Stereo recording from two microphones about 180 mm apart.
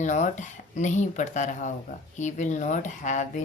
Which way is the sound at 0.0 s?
40° left (ahead or behind).